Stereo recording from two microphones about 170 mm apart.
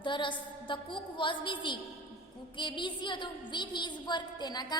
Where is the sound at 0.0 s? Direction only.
30° left (ahead or behind).